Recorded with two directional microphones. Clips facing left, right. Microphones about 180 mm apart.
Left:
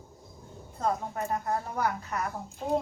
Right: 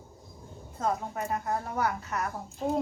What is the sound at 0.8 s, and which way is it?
Speech, centre (ahead or behind).